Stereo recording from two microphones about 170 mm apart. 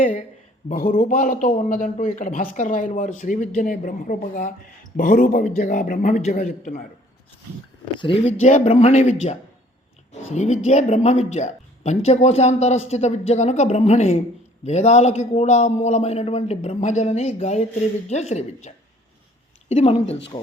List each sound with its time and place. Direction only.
0.0 s a man's voice: 45° left (ahead or behind)
7.9 s speech: 30° left (ahead or behind)